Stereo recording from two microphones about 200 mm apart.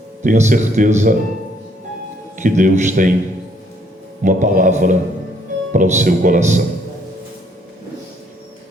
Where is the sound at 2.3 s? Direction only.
40° right (ahead or behind).